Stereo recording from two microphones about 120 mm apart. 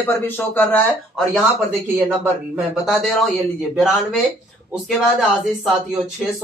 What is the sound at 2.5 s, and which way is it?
Speech, 5° right (ahead or behind).